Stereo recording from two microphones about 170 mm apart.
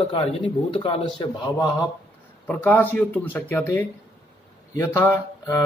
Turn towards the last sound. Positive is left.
turn(degrees=15)  # may be behind; listen again after turning